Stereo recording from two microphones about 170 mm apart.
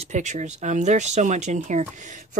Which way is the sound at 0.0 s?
45° right (ahead or behind).